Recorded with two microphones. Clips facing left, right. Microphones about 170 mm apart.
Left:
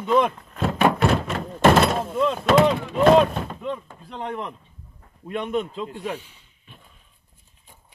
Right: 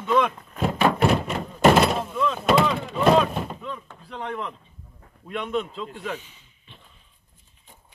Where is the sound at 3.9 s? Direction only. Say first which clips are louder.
Left 1 dB; 15° left (ahead or behind).